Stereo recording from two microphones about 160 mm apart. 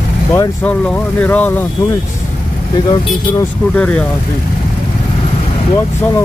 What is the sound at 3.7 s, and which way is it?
Speech, 10° left (ahead or behind).